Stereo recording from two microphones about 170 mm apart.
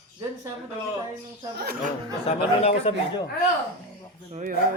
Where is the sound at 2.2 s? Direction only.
35° left (ahead or behind).